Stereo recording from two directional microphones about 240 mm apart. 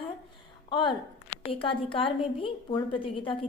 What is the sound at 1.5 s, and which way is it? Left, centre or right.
A woman's voice, left.